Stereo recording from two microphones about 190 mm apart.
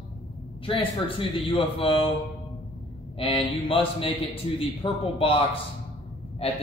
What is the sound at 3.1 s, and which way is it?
A man's voice, 30° left (ahead or behind).